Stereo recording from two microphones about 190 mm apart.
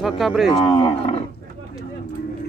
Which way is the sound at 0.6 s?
30° left (ahead or behind).